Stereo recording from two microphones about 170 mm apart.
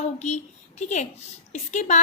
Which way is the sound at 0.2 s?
40° left (ahead or behind).